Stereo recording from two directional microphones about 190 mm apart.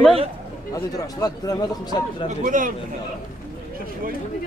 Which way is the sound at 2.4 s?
45° right (ahead or behind).